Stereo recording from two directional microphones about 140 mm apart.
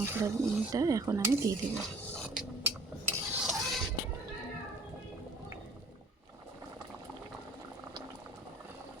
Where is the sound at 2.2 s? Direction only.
5° right (ahead or behind).